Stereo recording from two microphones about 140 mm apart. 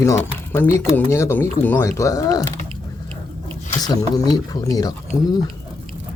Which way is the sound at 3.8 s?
25° left (ahead or behind).